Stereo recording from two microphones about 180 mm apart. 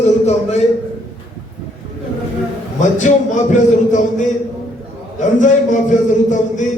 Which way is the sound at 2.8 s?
40° left (ahead or behind).